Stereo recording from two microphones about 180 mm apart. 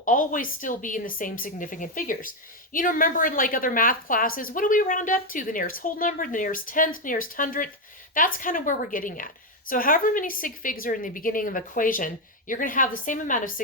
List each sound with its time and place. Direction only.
0.0 s a woman's voice: 45° left (ahead or behind)